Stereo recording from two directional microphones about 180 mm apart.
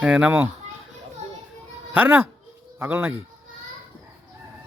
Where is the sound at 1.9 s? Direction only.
10° right (ahead or behind).